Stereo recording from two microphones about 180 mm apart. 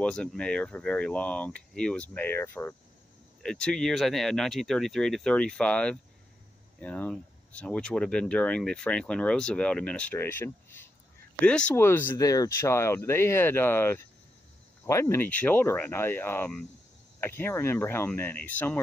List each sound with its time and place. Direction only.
0.0 s speech: 5° left (ahead or behind)